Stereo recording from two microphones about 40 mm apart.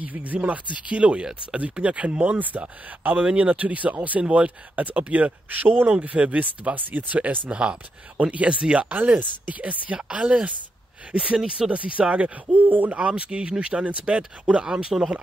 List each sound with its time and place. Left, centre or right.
0.0 s speech: right
6.7 s speech: right
7.4 s speech: right
8.5 s speech: right
8.8 s speech: right
9.9 s speech: centre
11.3 s speech: centre
11.7 s speech: right
12.4 s speech: right
12.9 s speech: right
14.5 s speech: centre